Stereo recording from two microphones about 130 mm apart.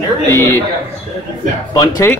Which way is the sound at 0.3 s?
20° left (ahead or behind).